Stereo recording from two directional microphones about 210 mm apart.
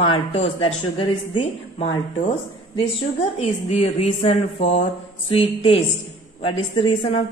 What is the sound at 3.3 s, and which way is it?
A woman's voice, 30° left (ahead or behind).